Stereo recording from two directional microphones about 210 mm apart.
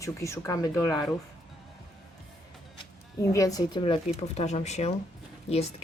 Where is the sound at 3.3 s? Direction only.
15° left (ahead or behind).